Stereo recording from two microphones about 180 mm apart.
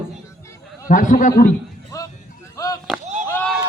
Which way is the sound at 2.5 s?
20° left (ahead or behind).